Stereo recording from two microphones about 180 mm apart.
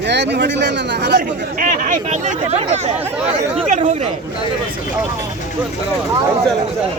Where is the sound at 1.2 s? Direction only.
50° right (ahead or behind).